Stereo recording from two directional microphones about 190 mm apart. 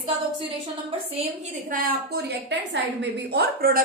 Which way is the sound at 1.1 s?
40° right (ahead or behind).